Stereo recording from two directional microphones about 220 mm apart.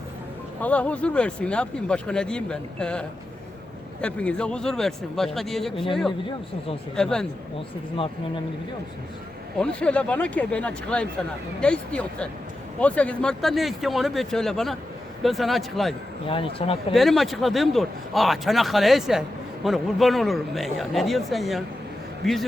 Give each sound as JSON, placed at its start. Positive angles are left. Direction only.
{"t": 0.6, "sound": "speech", "side_deg": 5}
{"t": 6.9, "sound": "speech", "side_deg": 5}
{"t": 9.6, "sound": "speech", "side_deg": 5}
{"t": 16.2, "sound": "speech", "side_deg": 25}
{"t": 16.9, "sound": "speech", "side_deg": 0}